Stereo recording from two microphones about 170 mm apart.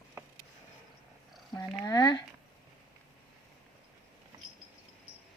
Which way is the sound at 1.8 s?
20° left (ahead or behind).